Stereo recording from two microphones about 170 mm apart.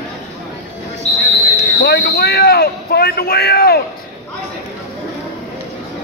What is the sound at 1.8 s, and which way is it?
A man's voice, 80° left.